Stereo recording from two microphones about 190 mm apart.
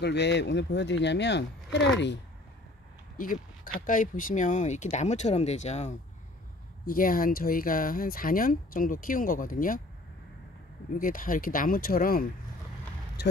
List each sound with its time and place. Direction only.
0.0 s speech: 65° left (ahead or behind)
3.2 s a sound: 45° left (ahead or behind)
3.8 s speech: 45° left (ahead or behind)
6.9 s speech: 50° left (ahead or behind)
11.0 s speech: 45° left (ahead or behind)